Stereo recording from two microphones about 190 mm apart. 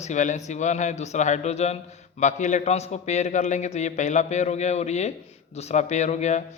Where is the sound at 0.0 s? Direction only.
40° left (ahead or behind).